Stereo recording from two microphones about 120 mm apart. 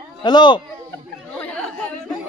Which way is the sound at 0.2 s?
40° left (ahead or behind).